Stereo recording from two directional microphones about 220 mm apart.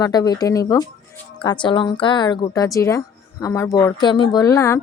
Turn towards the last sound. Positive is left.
turn(degrees=15)  # may be behind; listen again after turning